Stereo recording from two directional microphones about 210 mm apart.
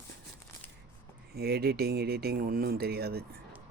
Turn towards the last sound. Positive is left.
turn(degrees=-50)  # may be behind; listen again after turning